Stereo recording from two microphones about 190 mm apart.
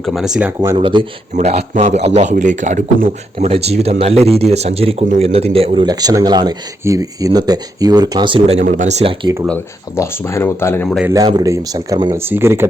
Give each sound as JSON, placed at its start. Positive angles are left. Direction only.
{"t": 0.0, "sound": "speech", "side_deg": 0}
{"t": 0.8, "sound": "speech", "side_deg": -25}
{"t": 9.2, "sound": "speech", "side_deg": -15}
{"t": 9.5, "sound": "speech", "side_deg": 15}
{"t": 11.1, "sound": "speech", "side_deg": -20}